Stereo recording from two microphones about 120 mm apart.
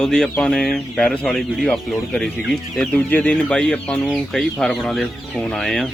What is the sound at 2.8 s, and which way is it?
Speech, 10° left (ahead or behind).